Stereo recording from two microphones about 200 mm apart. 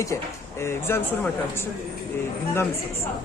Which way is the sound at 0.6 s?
10° left (ahead or behind).